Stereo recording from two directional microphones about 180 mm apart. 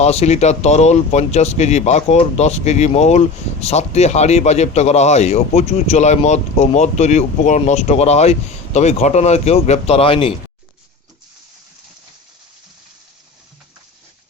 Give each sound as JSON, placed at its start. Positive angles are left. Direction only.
{"t": 0.0, "sound": "speech", "side_deg": 35}